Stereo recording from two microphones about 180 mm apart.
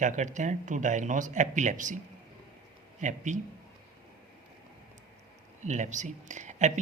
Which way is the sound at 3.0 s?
45° right (ahead or behind).